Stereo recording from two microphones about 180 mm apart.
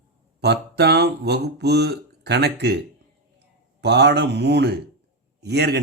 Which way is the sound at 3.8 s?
70° right (ahead or behind).